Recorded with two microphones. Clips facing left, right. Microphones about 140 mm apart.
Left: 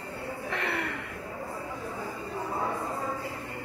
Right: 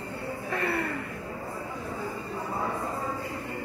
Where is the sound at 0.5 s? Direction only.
90° left.